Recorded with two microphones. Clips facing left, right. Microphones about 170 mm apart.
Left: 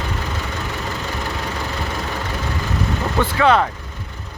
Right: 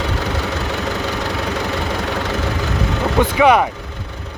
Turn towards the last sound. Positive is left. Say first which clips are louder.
# right 3 dB
turn(degrees=-15)  # may be behind; listen again after turning